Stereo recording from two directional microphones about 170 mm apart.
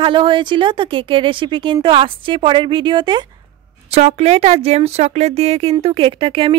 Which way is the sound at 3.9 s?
40° right (ahead or behind).